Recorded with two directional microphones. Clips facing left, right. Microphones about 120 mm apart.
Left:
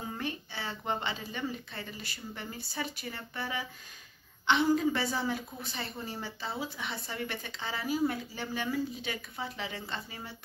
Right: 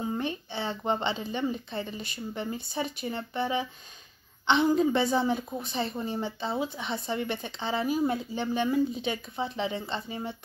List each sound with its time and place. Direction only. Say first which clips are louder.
0.1 s a woman's voice: right 6 dB; 25° right (ahead or behind)